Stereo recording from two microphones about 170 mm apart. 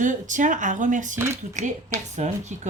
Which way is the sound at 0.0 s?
50° right (ahead or behind).